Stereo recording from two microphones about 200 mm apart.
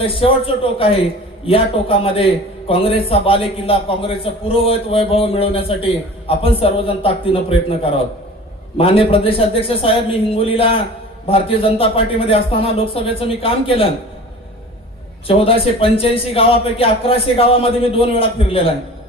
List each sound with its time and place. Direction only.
0.0 s a man's voice: 25° left (ahead or behind)
15.3 s a man's voice: 30° left (ahead or behind)